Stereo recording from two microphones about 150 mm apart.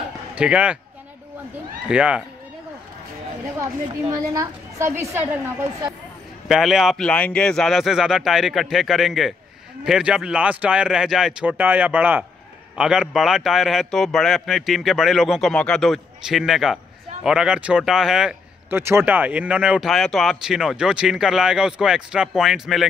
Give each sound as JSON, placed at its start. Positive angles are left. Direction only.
{"t": 0.4, "sound": "speech", "side_deg": -10}
{"t": 1.9, "sound": "speech", "side_deg": -5}
{"t": 4.1, "sound": "a woman's voice", "side_deg": -20}
{"t": 6.5, "sound": "a man's voice", "side_deg": 0}
{"t": 18.7, "sound": "a man's voice", "side_deg": -15}